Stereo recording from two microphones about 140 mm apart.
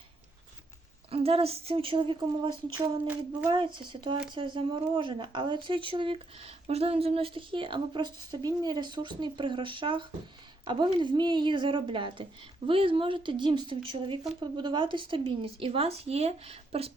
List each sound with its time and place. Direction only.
1.1 s speech: 45° right (ahead or behind)
2.7 s a sound: 25° right (ahead or behind)
3.5 s speech: 35° right (ahead or behind)